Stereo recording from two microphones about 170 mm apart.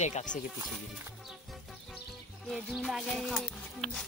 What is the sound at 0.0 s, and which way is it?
Speech, 45° left (ahead or behind).